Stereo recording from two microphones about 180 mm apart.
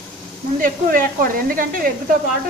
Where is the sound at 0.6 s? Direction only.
50° right (ahead or behind).